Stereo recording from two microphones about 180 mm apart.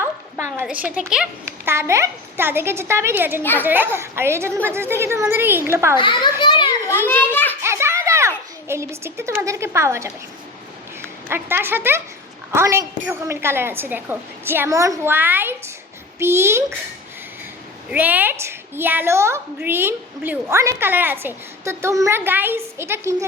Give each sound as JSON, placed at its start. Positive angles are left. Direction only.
{"t": 0.0, "sound": "a sound", "side_deg": -15}
{"t": 0.9, "sound": "a woman's voice", "side_deg": -5}
{"t": 6.0, "sound": "a child's voice", "side_deg": 25}
{"t": 6.4, "sound": "children playing", "side_deg": 25}
{"t": 7.1, "sound": "children playing", "side_deg": 10}
{"t": 7.6, "sound": "children playing", "side_deg": -15}
{"t": 8.6, "sound": "a woman's voice", "side_deg": -15}
{"t": 11.3, "sound": "a woman's voice", "side_deg": -10}
{"t": 17.9, "sound": "a woman's voice", "side_deg": -10}